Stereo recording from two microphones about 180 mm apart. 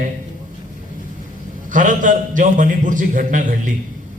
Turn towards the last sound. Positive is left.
turn(degrees=-45)  # may be behind; listen again after turning